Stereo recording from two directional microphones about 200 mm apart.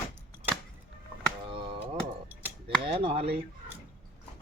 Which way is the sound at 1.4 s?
25° right (ahead or behind).